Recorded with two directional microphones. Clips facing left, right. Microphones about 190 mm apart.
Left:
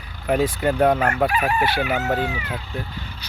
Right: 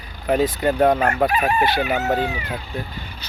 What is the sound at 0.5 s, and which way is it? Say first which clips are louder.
Speech: right 1 dB; 10° right (ahead or behind).